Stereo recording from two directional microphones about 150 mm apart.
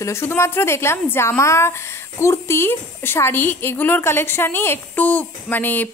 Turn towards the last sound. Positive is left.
turn(degrees=10)  # may be behind; listen again after turning